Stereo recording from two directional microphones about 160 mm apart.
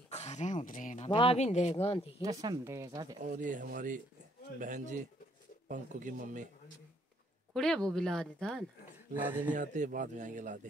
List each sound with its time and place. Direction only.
0.1 s a sound: 45° left (ahead or behind)
1.1 s speech: 35° left (ahead or behind)
2.2 s speech: 25° right (ahead or behind)
3.2 s speech: 55° right (ahead or behind)
7.5 s speech: centre (ahead or behind)
9.1 s speech: 10° right (ahead or behind)
9.5 s speech: 50° right (ahead or behind)